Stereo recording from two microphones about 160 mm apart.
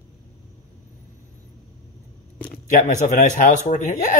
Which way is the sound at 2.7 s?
50° left (ahead or behind).